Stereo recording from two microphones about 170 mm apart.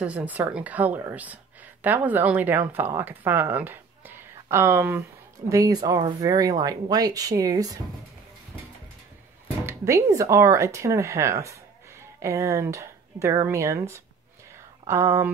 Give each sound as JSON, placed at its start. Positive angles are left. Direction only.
{"t": 0.0, "sound": "a woman's voice", "side_deg": -10}
{"t": 9.7, "sound": "speech", "side_deg": -15}